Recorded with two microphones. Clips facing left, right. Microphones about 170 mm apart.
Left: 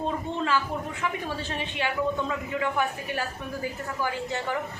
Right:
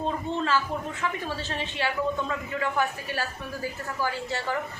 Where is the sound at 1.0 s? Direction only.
15° left (ahead or behind).